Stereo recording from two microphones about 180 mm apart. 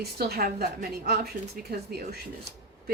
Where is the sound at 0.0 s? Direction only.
60° right (ahead or behind).